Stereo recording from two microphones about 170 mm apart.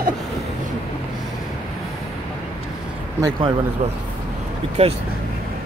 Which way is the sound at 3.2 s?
30° right (ahead or behind).